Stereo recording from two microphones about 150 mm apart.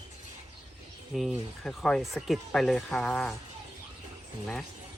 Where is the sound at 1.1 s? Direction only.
Centre (ahead or behind).